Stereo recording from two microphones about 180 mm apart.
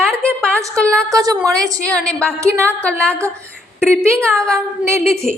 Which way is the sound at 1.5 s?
5° left (ahead or behind).